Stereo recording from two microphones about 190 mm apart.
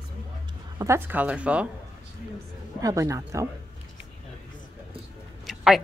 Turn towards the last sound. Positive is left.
turn(degrees=0)  # may be behind; listen again after turning